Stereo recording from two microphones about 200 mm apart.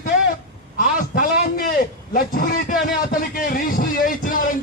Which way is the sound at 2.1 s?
45° left (ahead or behind).